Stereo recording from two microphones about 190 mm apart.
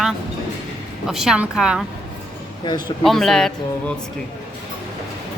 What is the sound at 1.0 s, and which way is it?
Speech, centre (ahead or behind).